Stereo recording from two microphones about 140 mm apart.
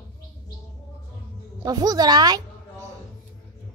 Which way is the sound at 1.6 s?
25° right (ahead or behind).